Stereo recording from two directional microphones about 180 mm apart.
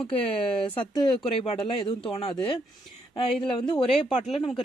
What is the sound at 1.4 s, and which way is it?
Speech, 30° left (ahead or behind).